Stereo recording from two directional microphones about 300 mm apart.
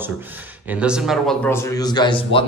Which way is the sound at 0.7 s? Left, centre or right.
Centre.